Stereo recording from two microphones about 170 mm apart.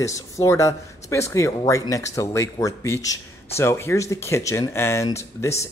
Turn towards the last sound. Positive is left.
turn(degrees=15)  # may be behind; listen again after turning